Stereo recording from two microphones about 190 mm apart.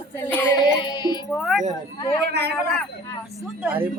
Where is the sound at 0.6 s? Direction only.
20° left (ahead or behind).